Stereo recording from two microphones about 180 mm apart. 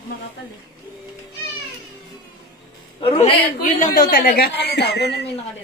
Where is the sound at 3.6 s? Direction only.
50° left (ahead or behind); by 5.2 s 65° left (ahead or behind).